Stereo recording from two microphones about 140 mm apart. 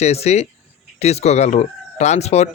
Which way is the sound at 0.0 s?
50° left (ahead or behind).